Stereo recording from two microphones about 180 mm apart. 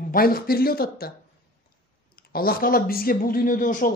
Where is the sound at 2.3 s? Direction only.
55° left (ahead or behind).